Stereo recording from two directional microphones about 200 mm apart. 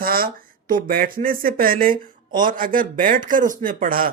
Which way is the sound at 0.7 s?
45° right (ahead or behind).